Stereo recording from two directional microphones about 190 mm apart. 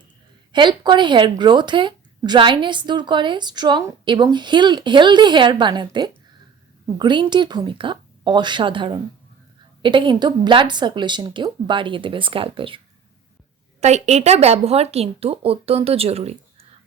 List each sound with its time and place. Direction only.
0.5 s speech: 25° right (ahead or behind)
13.8 s speech: 35° right (ahead or behind)